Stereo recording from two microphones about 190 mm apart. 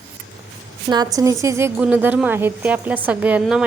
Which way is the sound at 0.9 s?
20° right (ahead or behind).